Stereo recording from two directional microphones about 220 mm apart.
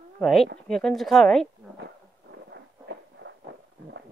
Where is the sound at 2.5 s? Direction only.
50° right (ahead or behind).